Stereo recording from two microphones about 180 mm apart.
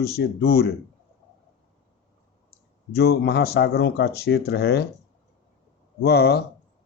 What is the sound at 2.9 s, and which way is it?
Speech, 60° left (ahead or behind).